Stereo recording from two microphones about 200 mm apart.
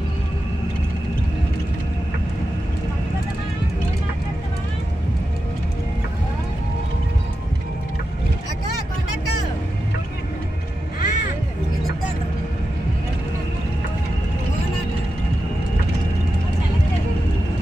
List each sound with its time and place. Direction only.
11.0 s music: 40° left (ahead or behind)